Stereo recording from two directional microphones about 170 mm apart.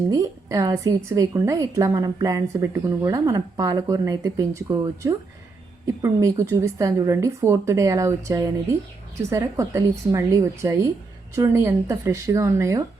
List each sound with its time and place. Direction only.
0.1 s a woman's voice: 20° right (ahead or behind)